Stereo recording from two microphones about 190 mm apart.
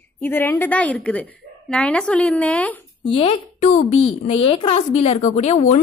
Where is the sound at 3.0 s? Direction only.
30° left (ahead or behind).